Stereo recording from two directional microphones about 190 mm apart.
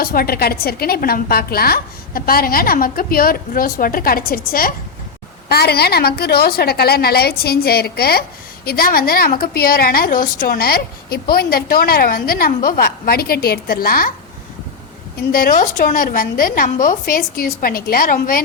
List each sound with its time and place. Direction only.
0.0 s a woman's voice: 50° left (ahead or behind)
15.3 s a woman's voice: 50° left (ahead or behind)